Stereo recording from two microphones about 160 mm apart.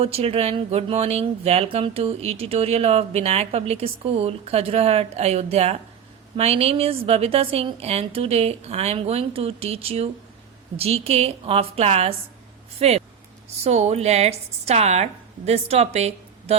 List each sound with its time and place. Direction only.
0.0 s a woman's voice: 40° right (ahead or behind)